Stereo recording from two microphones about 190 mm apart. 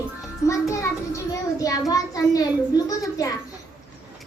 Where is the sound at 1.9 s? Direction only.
20° left (ahead or behind).